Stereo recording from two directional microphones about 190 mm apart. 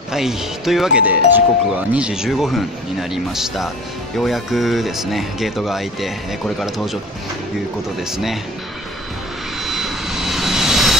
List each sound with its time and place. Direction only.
0.1 s speech: centre (ahead or behind)
8.0 s speech: centre (ahead or behind)
9.6 s vehicle: centre (ahead or behind)